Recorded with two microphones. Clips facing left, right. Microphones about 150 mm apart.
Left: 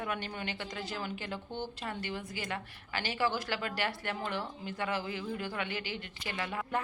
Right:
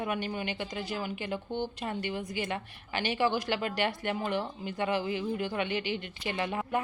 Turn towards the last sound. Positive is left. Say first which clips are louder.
# right 4 dB
turn(degrees=-20)  # may be behind; listen again after turning